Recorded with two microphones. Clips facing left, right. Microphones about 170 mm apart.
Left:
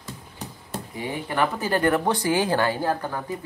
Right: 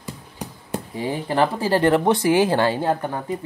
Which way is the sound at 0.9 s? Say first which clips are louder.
Right 5 dB; 30° right (ahead or behind).